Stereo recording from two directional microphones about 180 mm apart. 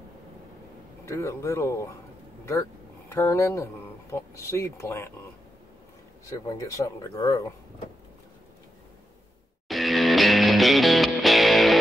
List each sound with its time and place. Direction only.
1.0 s speech: 15° left (ahead or behind)
3.1 s speech: 15° left (ahead or behind)
6.3 s speech: 20° left (ahead or behind)
9.7 s music: centre (ahead or behind)